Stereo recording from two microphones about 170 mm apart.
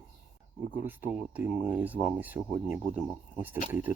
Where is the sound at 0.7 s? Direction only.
10° right (ahead or behind).